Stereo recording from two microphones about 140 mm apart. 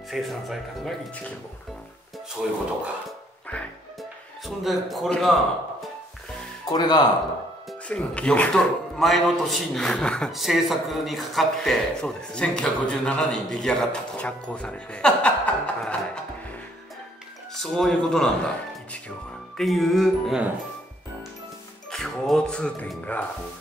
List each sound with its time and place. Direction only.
0.1 s speech: centre (ahead or behind)
2.4 s speech: 5° right (ahead or behind)
4.5 s speech: centre (ahead or behind)
6.6 s speech: 30° left (ahead or behind)
7.9 s speech: 10° left (ahead or behind)
17.7 s speech: 5° left (ahead or behind)
21.9 s speech: centre (ahead or behind)